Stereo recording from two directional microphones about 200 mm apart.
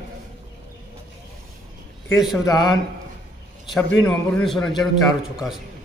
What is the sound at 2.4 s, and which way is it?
Speech, 20° left (ahead or behind).